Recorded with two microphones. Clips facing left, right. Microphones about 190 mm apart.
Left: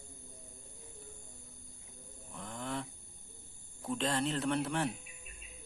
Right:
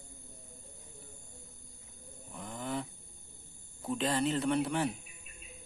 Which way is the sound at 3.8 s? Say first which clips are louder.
Right 2 dB; centre (ahead or behind).